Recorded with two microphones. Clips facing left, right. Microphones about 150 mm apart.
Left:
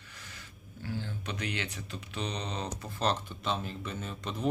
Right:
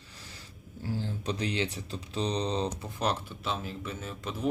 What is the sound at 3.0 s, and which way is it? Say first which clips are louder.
Speech: even; 10° right (ahead or behind).